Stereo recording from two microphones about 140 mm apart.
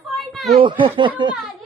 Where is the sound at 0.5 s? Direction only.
35° right (ahead or behind).